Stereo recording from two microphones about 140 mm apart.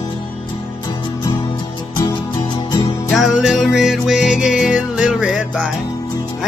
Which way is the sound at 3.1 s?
Centre (ahead or behind).